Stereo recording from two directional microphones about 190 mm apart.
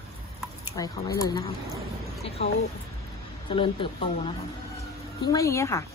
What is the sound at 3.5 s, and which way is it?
A woman's voice, 25° left (ahead or behind).